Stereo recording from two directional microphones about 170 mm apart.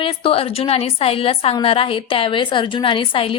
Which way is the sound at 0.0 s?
30° left (ahead or behind).